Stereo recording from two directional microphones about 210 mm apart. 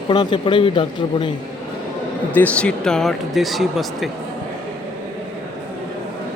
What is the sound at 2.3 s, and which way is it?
Speech, 5° left (ahead or behind).